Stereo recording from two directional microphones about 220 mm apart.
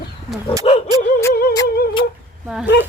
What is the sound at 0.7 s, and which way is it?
Dog, 25° left (ahead or behind).